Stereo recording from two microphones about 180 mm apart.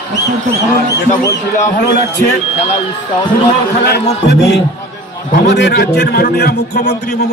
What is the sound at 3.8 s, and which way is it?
A man's voice, 65° left (ahead or behind).